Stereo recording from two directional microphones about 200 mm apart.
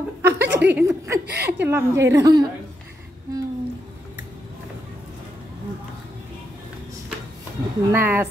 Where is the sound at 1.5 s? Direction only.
10° right (ahead or behind).